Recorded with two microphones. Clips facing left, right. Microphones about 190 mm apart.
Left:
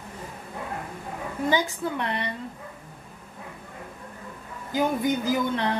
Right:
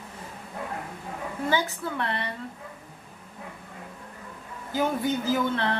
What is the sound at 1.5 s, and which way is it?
Speech, 15° left (ahead or behind).